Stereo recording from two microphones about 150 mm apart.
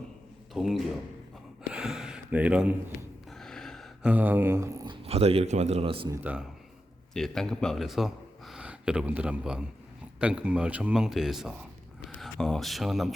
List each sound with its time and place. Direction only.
0.5 s speech: centre (ahead or behind)
1.7 s a sound: 5° right (ahead or behind)
3.2 s gasp: 5° left (ahead or behind)
4.1 s a sound: 10° right (ahead or behind)
4.9 s a man's voice: 40° right (ahead or behind)
7.1 s speech: 5° left (ahead or behind)